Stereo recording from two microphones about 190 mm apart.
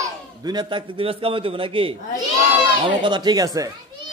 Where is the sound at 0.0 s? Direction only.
20° right (ahead or behind).